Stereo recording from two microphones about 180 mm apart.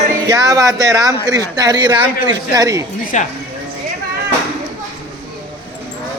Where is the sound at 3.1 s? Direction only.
40° left (ahead or behind).